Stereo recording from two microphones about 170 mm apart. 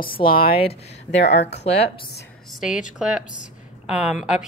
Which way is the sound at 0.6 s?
90° left.